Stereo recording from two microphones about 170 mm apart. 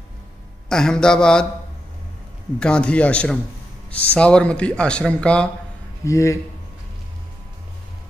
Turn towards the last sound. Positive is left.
turn(degrees=15)  # may be behind; listen again after turning